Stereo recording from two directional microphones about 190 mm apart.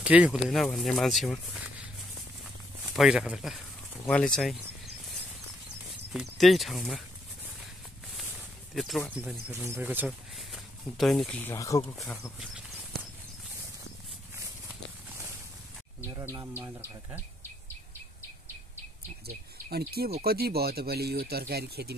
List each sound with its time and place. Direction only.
0.0 s speech: 5° right (ahead or behind)
2.4 s a sound: centre (ahead or behind)
4.0 s speech: 5° left (ahead or behind)
6.1 s speech: centre (ahead or behind)
8.7 s speech: centre (ahead or behind); by 11.8 s 15° left (ahead or behind)
11.8 s speech: 5° left (ahead or behind)
14.7 s clip-clop: 15° right (ahead or behind)
16.1 s insect: 20° right (ahead or behind)
19.2 s speech: 55° right (ahead or behind)